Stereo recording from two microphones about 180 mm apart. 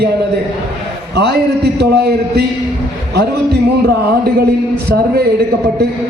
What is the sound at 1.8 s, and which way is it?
Speech, 65° right (ahead or behind).